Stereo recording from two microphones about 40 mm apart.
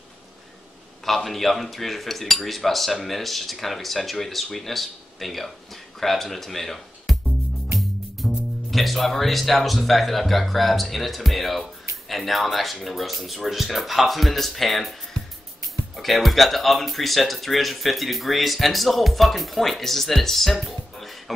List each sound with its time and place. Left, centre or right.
1.0 s cutlery: centre
8.2 s music: centre
8.6 s cutlery: centre
16.0 s cutlery: centre
20.5 s music: centre